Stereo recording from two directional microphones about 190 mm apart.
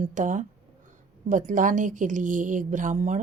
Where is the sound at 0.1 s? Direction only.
40° right (ahead or behind).